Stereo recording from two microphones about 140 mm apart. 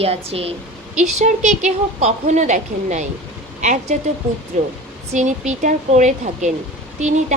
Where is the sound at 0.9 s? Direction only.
60° right (ahead or behind).